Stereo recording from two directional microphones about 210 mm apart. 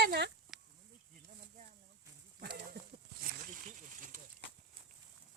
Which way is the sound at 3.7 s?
40° right (ahead or behind).